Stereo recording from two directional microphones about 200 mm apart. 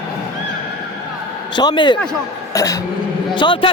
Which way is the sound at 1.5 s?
20° left (ahead or behind).